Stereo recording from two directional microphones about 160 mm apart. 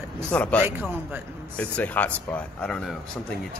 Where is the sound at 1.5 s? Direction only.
10° left (ahead or behind).